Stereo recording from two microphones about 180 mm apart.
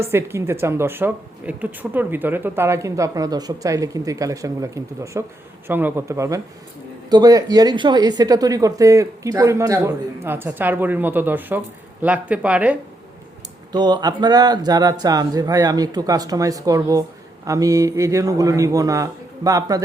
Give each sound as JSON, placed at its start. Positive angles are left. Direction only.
{"t": 0.0, "sound": "speech", "side_deg": -15}
{"t": 13.7, "sound": "speech", "side_deg": -25}